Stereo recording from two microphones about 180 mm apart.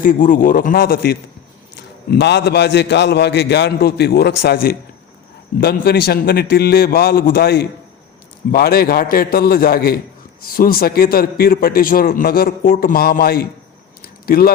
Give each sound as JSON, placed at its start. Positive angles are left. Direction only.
{"t": 0.0, "sound": "a man's voice", "side_deg": 50}
{"t": 1.7, "sound": "a man's voice", "side_deg": 70}
{"t": 14.0, "sound": "a sound", "side_deg": 55}